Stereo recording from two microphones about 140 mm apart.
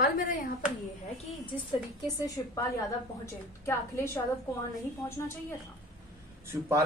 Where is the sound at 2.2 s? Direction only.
25° left (ahead or behind).